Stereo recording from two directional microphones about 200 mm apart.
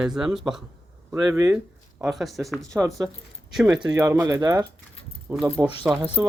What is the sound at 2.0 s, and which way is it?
Speech, centre (ahead or behind).